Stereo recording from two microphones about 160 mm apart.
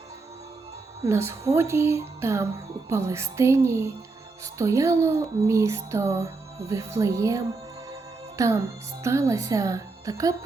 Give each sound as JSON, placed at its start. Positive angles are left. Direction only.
{"t": 1.0, "sound": "speech", "side_deg": -15}